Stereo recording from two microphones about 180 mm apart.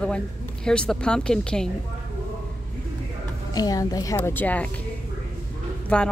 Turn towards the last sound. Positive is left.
turn(degrees=5)  # may be behind; listen again after turning